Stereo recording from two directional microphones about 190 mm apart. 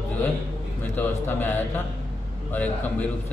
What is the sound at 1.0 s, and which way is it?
Speech, 10° left (ahead or behind).